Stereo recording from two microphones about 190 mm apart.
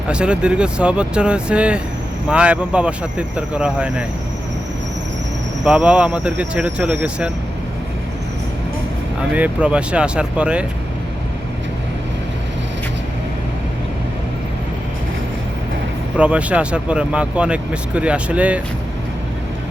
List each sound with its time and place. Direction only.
0.1 s speech: 5° right (ahead or behind)
5.6 s speech: 5° right (ahead or behind)
9.3 s speech: 5° right (ahead or behind)
16.1 s speech: 5° right (ahead or behind)